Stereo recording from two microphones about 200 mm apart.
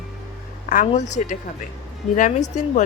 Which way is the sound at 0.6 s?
40° left (ahead or behind).